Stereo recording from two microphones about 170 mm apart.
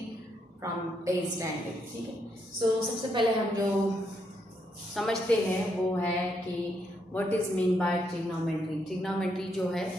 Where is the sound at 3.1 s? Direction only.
30° right (ahead or behind).